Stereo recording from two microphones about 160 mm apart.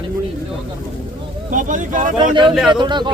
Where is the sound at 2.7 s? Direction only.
30° right (ahead or behind).